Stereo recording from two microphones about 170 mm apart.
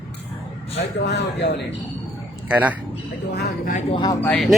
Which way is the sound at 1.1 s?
80° left.